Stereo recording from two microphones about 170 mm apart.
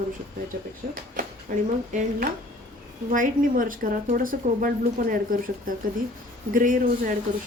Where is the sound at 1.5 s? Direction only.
50° right (ahead or behind).